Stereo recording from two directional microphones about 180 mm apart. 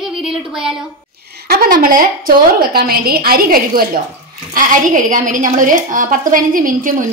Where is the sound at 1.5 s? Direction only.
55° right (ahead or behind).